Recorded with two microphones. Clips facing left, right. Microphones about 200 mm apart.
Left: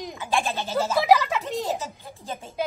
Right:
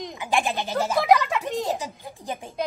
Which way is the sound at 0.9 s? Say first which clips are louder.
Even; centre (ahead or behind).